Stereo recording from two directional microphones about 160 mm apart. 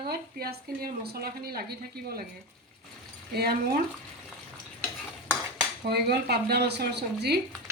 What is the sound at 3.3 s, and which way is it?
Speech, 75° right (ahead or behind).